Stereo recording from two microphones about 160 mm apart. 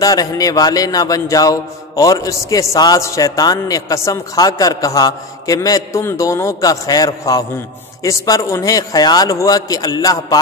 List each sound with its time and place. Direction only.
0.0 s speech: 20° left (ahead or behind)